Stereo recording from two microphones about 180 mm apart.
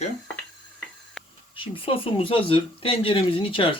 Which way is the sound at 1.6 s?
30° left (ahead or behind).